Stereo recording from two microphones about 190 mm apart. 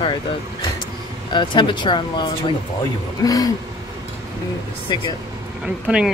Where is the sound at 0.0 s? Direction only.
25° left (ahead or behind).